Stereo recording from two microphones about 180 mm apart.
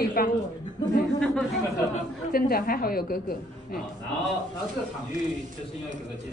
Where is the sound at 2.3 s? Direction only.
55° left (ahead or behind).